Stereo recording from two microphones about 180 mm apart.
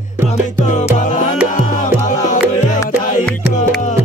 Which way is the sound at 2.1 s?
45° left (ahead or behind).